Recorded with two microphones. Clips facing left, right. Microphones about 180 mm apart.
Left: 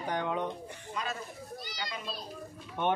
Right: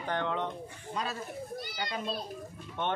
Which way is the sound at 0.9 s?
35° right (ahead or behind).